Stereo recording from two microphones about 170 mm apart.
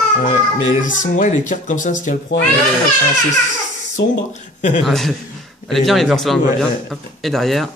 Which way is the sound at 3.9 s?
45° left (ahead or behind).